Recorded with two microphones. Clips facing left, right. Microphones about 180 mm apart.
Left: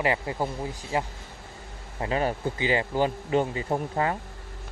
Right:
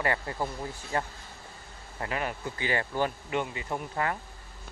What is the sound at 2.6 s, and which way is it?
Speech, 20° left (ahead or behind).